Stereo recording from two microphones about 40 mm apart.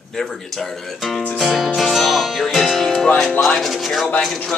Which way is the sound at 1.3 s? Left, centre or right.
Centre.